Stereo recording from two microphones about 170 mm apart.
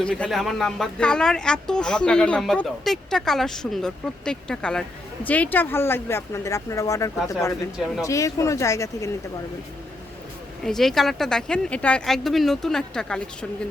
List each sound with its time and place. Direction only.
0.0 s speech: 5° left (ahead or behind)
10.6 s speech: centre (ahead or behind)